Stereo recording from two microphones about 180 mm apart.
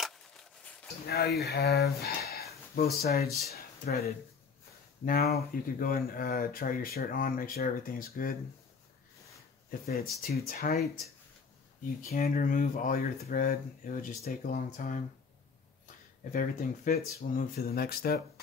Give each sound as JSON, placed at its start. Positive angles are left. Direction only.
{"t": 0.0, "sound": "a sound", "side_deg": 5}
{"t": 1.0, "sound": "speech", "side_deg": 60}
{"t": 9.7, "sound": "speech", "side_deg": 60}
{"t": 12.0, "sound": "speech", "side_deg": 50}
{"t": 16.3, "sound": "speech", "side_deg": 50}